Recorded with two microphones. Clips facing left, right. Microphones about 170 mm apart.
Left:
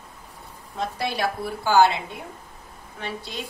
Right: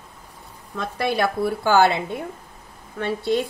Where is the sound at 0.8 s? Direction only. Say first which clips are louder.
Right 4 dB; 55° right (ahead or behind).